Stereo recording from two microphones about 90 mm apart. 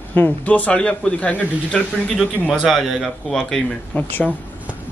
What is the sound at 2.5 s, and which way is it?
Speech, centre (ahead or behind).